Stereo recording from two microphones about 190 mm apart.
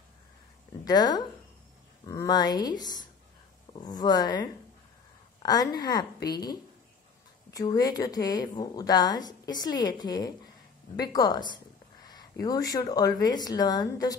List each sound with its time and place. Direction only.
0.8 s a woman's voice: 20° left (ahead or behind)